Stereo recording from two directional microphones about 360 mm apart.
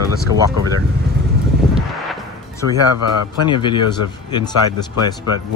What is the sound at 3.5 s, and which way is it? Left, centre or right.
Speech, centre.